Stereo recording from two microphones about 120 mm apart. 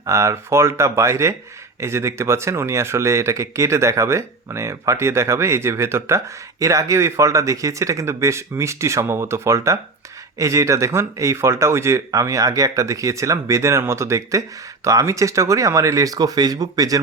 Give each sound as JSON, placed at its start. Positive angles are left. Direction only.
{"t": 0.0, "sound": "speech", "side_deg": -25}